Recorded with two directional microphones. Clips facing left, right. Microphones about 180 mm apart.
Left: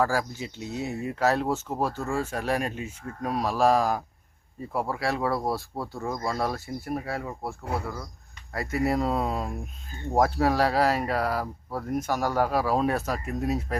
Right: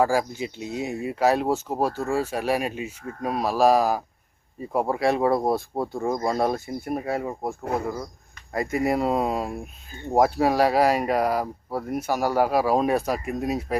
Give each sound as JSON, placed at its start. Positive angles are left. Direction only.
{"t": 0.0, "sound": "speech", "side_deg": -15}
{"t": 4.7, "sound": "speech", "side_deg": -20}